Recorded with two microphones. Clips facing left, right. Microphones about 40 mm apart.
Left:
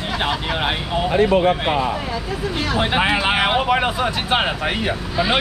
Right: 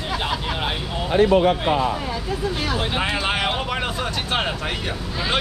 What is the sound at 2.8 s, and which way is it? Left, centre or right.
Speech, left.